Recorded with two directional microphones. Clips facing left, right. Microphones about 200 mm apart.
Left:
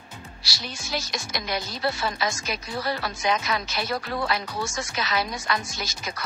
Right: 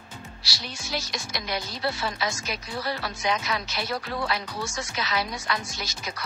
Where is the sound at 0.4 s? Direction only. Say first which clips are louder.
Left 3 dB; 45° left (ahead or behind).